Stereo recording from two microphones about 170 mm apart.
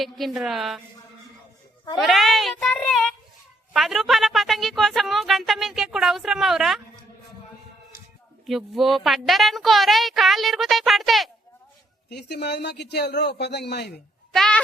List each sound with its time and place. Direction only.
0.0 s speech: centre (ahead or behind)
2.0 s child singing: centre (ahead or behind)
3.7 s speech: centre (ahead or behind)
8.4 s speech: centre (ahead or behind)
12.0 s a man's voice: 80° left
14.3 s a sound: 5° left (ahead or behind)